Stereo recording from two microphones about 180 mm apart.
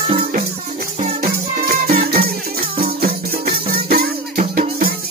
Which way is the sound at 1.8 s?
60° right (ahead or behind).